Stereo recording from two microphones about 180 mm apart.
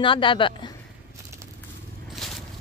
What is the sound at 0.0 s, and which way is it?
Speech, 30° left (ahead or behind).